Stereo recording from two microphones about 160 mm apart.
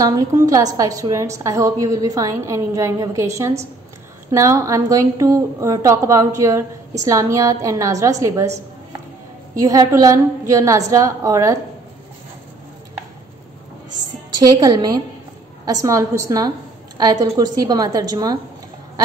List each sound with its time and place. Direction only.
0.0 s a woman's voice: 20° right (ahead or behind)
9.6 s a woman's voice: 20° right (ahead or behind)
14.4 s a woman's voice: 25° right (ahead or behind)